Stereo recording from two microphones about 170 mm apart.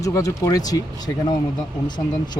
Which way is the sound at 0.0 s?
20° left (ahead or behind).